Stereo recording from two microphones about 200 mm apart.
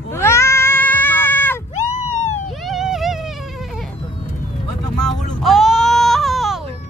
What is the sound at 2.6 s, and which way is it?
Vehicle, centre (ahead or behind).